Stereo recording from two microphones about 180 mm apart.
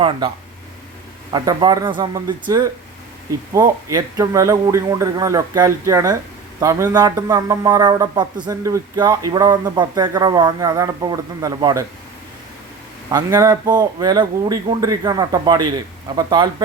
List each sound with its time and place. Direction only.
1.3 s a man's voice: 20° right (ahead or behind)
3.5 s a man's voice: 20° right (ahead or behind)
13.1 s a man's voice: 20° right (ahead or behind)